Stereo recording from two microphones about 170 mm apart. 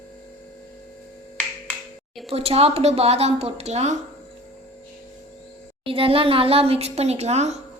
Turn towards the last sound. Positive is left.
turn(degrees=-40)  # may be behind; listen again after turning